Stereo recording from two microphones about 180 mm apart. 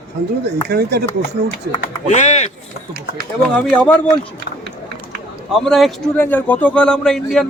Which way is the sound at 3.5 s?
10° left (ahead or behind).